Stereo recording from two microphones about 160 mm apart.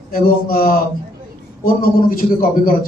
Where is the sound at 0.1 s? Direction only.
65° left (ahead or behind).